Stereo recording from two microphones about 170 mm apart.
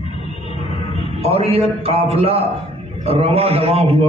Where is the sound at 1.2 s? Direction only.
35° right (ahead or behind).